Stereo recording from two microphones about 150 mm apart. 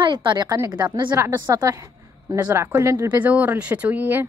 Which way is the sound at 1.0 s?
15° right (ahead or behind).